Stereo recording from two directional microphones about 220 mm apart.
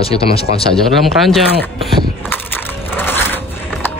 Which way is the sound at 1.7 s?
5° left (ahead or behind).